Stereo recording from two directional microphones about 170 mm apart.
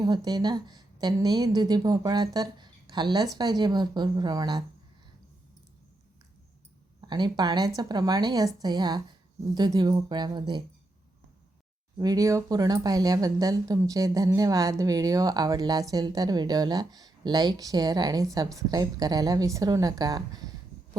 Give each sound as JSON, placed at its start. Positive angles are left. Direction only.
{"t": 0.0, "sound": "speech", "side_deg": -25}
{"t": 7.1, "sound": "speech", "side_deg": -25}
{"t": 11.9, "sound": "speech", "side_deg": -20}